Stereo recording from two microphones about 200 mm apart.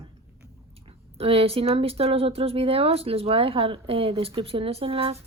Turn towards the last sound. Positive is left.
turn(degrees=-30)  # may be behind; listen again after turning